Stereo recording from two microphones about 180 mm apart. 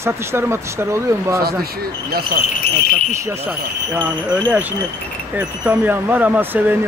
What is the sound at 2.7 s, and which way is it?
Speech, 60° left (ahead or behind).